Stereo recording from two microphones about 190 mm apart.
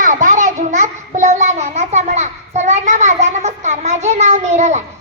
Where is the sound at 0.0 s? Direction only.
45° right (ahead or behind).